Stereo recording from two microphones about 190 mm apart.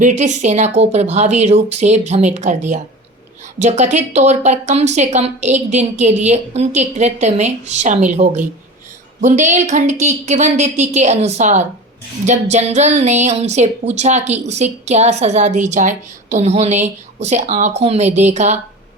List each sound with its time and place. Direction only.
0.0 s speech: 40° right (ahead or behind)